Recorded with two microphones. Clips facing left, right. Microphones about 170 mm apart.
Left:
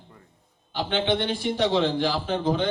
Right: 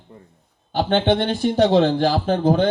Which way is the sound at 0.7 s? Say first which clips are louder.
Right 6 dB; 50° right (ahead or behind).